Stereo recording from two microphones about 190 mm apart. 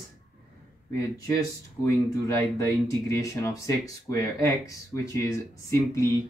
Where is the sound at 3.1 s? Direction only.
15° left (ahead or behind).